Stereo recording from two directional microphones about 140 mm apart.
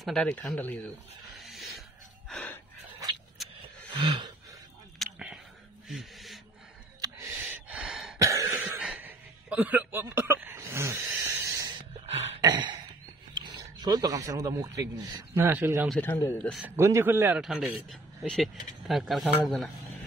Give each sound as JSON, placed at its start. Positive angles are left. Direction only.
{"t": 0.0, "sound": "speech", "side_deg": 5}
{"t": 1.4, "sound": "dog", "side_deg": 0}
{"t": 3.4, "sound": "a sound", "side_deg": 0}
{"t": 3.9, "sound": "a sound", "side_deg": -35}
{"t": 4.9, "sound": "a sound", "side_deg": 0}
{"t": 7.2, "sound": "gasp", "side_deg": -15}
{"t": 8.2, "sound": "cough", "side_deg": -20}
{"t": 12.4, "sound": "a sound", "side_deg": -30}
{"t": 13.4, "sound": "speech", "side_deg": -30}
{"t": 15.3, "sound": "a man's voice", "side_deg": -15}
{"t": 16.0, "sound": "speech", "side_deg": 15}
{"t": 16.6, "sound": "a man's voice", "side_deg": -20}
{"t": 17.4, "sound": "speech", "side_deg": -5}